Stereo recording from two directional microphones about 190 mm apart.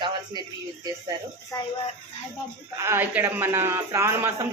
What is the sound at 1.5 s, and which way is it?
Speech, 20° left (ahead or behind).